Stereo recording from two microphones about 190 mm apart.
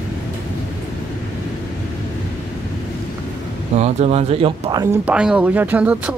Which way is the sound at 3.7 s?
35° right (ahead or behind).